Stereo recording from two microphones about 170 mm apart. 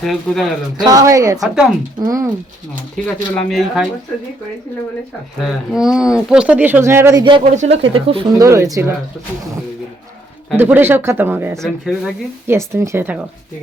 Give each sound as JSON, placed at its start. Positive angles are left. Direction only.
{"t": 0.0, "sound": "speech", "side_deg": 0}
{"t": 0.8, "sound": "a woman's voice", "side_deg": -20}
{"t": 1.4, "sound": "speech", "side_deg": -5}
{"t": 2.0, "sound": "a woman's voice", "side_deg": -20}
{"t": 3.0, "sound": "speech", "side_deg": 0}
{"t": 5.4, "sound": "speech", "side_deg": 0}
{"t": 7.5, "sound": "speech", "side_deg": -45}
{"t": 7.9, "sound": "speech", "side_deg": -35}
{"t": 8.4, "sound": "a woman's voice", "side_deg": -20}
{"t": 10.6, "sound": "speech", "side_deg": -10}
{"t": 11.5, "sound": "speech", "side_deg": 0}
{"t": 12.5, "sound": "speech", "side_deg": -15}